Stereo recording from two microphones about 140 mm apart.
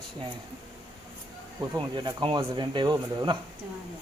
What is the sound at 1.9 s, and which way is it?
Speech, 35° right (ahead or behind).